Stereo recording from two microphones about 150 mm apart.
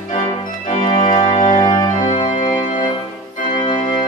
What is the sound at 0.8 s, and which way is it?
Organ, 50° left (ahead or behind).